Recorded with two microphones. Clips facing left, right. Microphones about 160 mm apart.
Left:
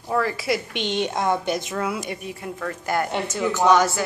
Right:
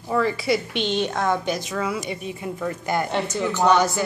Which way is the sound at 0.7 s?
15° left (ahead or behind).